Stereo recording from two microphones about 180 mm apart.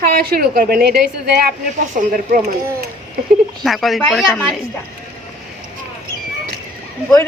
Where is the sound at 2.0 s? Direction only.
50° right (ahead or behind).